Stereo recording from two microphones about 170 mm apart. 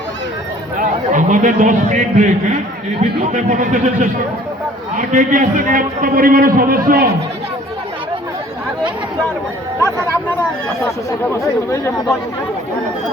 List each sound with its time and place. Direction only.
0.8 s a man's voice: 50° right (ahead or behind)
10.8 s speech: 15° left (ahead or behind)